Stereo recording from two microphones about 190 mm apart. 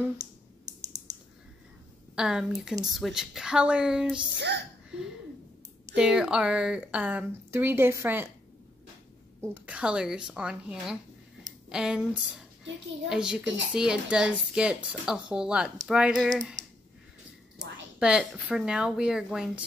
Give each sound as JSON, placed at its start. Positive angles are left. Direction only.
{"t": 2.1, "sound": "a woman's voice", "side_deg": -5}
{"t": 4.4, "sound": "speech", "side_deg": -65}
{"t": 5.9, "sound": "speech", "side_deg": -5}
{"t": 9.4, "sound": "a woman's voice", "side_deg": -10}
{"t": 17.9, "sound": "a woman's voice", "side_deg": -5}